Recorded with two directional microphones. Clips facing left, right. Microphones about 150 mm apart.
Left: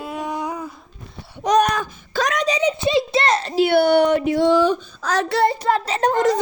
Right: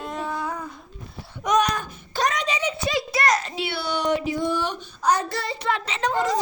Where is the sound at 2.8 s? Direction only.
25° left (ahead or behind).